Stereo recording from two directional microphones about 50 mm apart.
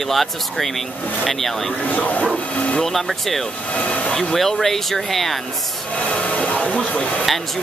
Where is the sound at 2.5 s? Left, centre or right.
Left.